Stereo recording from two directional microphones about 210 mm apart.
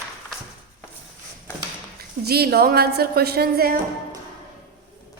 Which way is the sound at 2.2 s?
50° right (ahead or behind).